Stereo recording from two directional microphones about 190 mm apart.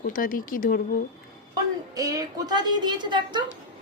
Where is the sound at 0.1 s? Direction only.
45° left (ahead or behind).